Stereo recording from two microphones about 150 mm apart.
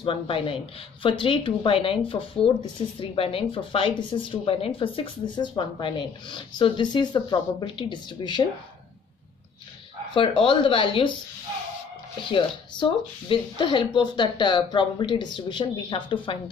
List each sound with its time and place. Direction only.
0.0 s speech: 35° left (ahead or behind)
10.1 s speech: 35° left (ahead or behind)
12.3 s speech: 35° left (ahead or behind)